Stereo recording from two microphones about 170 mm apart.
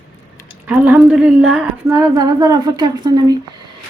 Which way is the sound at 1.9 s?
20° right (ahead or behind).